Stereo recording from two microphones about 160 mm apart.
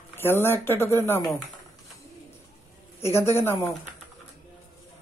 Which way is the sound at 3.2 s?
15° left (ahead or behind).